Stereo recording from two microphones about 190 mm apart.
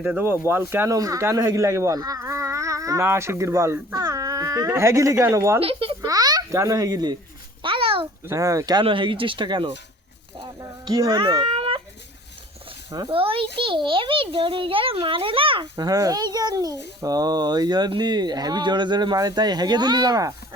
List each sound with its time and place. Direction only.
0.0 s speech: 10° right (ahead or behind)
5.5 s a child's voice: 30° right (ahead or behind)
7.6 s babbling: 30° right (ahead or behind)
8.3 s speech: 15° right (ahead or behind)
10.3 s a sound: 25° right (ahead or behind)
12.9 s speech: 25° right (ahead or behind)